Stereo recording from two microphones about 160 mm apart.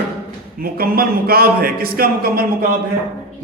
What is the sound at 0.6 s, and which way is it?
Speech, 70° right (ahead or behind).